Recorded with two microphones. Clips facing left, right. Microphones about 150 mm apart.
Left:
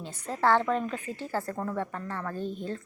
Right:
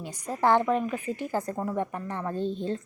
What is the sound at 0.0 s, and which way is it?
A woman's voice, 15° right (ahead or behind).